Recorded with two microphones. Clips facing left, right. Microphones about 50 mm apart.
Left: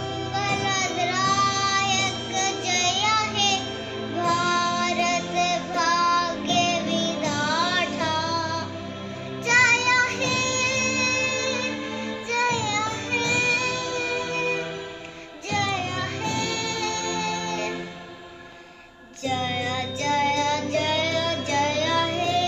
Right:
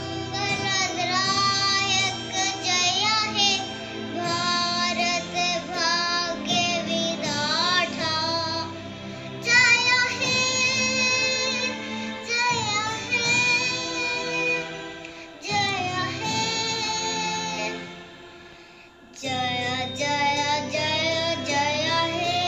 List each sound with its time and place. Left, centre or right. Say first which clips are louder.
0.1 s music: left 2 dB; left
19.2 s child singing: left 1 dB; left